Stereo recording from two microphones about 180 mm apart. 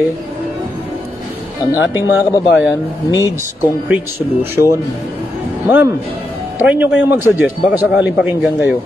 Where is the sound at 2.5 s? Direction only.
80° left.